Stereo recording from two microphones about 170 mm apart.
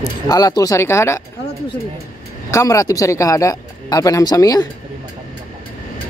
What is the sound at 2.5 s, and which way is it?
Speech, 20° left (ahead or behind).